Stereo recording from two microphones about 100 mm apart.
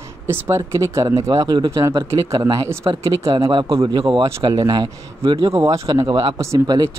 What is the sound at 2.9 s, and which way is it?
Speech, 45° right (ahead or behind).